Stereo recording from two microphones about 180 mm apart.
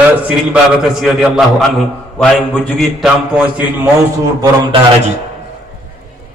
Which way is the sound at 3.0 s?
5° right (ahead or behind).